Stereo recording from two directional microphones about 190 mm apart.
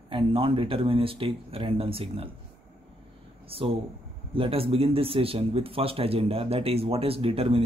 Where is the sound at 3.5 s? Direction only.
30° right (ahead or behind).